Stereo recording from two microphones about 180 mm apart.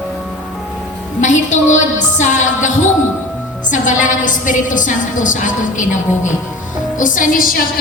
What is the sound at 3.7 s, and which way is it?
A woman's voice, 45° left (ahead or behind).